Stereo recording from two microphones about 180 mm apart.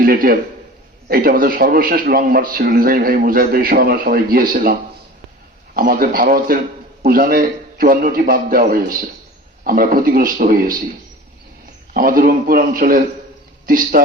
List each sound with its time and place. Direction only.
0.0 s a man's voice: 55° right (ahead or behind)
11.9 s a man's voice: 50° right (ahead or behind)